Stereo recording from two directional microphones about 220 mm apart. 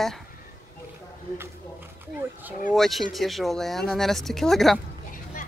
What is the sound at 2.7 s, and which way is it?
Speech, centre (ahead or behind).